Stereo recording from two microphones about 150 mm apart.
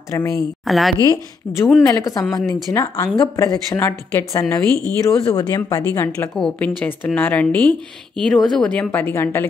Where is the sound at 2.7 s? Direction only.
20° left (ahead or behind).